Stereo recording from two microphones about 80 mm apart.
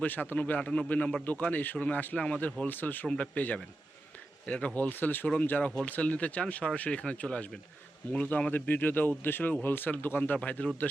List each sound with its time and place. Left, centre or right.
0.0 s speech: left